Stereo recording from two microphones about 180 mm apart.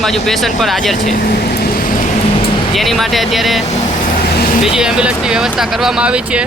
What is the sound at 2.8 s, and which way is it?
Speech, centre (ahead or behind).